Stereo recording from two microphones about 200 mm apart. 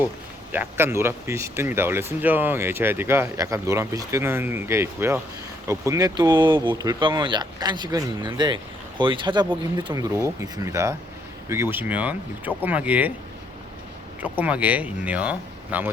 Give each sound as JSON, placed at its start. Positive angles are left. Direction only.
{"t": 0.5, "sound": "speech", "side_deg": -10}
{"t": 14.2, "sound": "speech", "side_deg": -10}